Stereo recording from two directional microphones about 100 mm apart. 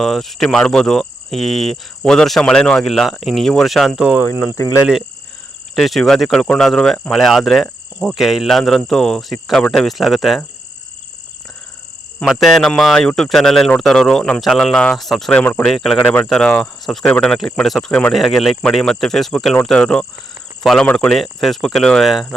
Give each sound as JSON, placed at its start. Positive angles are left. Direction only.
{"t": 0.0, "sound": "speech", "side_deg": 0}
{"t": 5.7, "sound": "speech", "side_deg": 0}
{"t": 12.2, "sound": "speech", "side_deg": 0}
{"t": 15.4, "sound": "speech", "side_deg": 15}
{"t": 15.6, "sound": "speech", "side_deg": 0}